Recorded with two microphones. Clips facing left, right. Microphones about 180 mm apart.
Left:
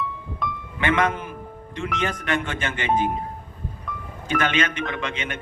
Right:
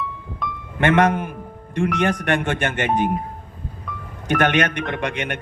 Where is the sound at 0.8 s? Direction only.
60° right (ahead or behind).